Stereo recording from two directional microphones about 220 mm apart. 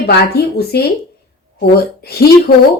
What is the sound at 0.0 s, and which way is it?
A woman's voice, 45° left (ahead or behind).